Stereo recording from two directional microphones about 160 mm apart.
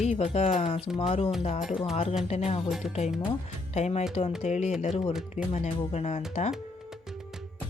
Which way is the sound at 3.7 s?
45° left (ahead or behind).